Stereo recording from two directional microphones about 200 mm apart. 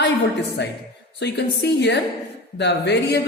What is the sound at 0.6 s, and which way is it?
A woman's voice, 60° left (ahead or behind).